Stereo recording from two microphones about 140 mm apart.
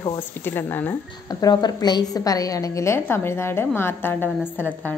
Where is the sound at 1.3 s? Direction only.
30° left (ahead or behind).